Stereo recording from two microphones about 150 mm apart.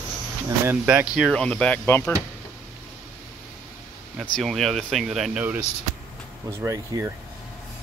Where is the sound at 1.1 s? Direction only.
5° left (ahead or behind).